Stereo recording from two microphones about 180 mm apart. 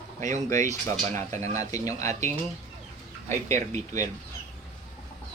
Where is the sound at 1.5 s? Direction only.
20° left (ahead or behind).